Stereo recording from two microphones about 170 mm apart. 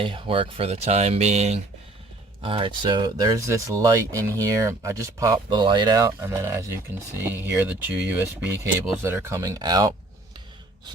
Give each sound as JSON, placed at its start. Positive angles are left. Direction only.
{"t": 0.0, "sound": "speech", "side_deg": -30}